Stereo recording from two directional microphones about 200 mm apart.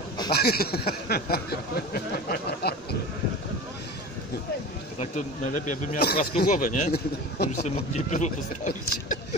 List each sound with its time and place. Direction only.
0.3 s speech: 50° left (ahead or behind)
4.9 s speech: 35° left (ahead or behind)
6.9 s speech: 50° left (ahead or behind)
7.6 s speech: 35° left (ahead or behind)